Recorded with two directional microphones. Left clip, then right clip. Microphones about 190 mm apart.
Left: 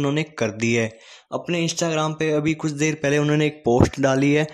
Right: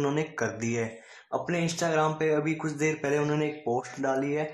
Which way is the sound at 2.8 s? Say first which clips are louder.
Left 6 dB; 90° left.